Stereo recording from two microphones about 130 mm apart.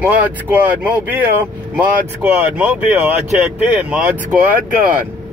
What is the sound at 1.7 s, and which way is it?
Speech, 15° right (ahead or behind).